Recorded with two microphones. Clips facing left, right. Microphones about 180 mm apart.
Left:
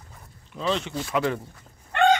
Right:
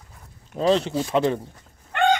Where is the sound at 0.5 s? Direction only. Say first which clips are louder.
Right 7 dB; 40° right (ahead or behind).